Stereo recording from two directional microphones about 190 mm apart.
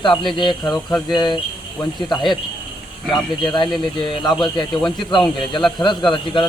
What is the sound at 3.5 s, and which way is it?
Speech, 25° left (ahead or behind).